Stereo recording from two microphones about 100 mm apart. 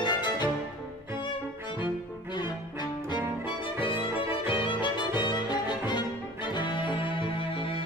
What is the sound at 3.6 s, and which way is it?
Music, 60° left (ahead or behind).